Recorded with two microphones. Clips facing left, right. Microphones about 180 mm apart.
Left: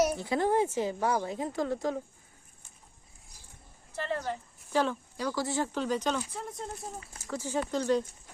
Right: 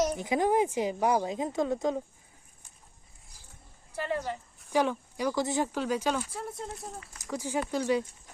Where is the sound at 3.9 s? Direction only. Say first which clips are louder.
Right 1 dB; 10° right (ahead or behind).